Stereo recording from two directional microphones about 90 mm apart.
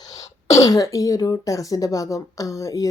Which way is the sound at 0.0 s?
40° left (ahead or behind).